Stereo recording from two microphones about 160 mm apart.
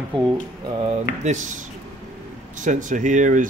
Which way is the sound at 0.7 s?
40° right (ahead or behind).